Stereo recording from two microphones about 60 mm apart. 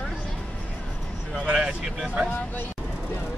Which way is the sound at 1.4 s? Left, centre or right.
Centre.